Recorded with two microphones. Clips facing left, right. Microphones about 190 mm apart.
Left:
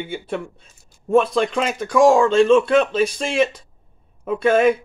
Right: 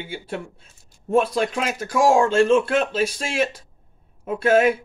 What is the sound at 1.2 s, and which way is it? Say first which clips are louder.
Speech: left 3 dB; 5° right (ahead or behind).